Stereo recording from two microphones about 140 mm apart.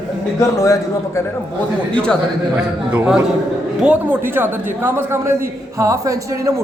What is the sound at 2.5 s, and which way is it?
A man's voice, 10° right (ahead or behind).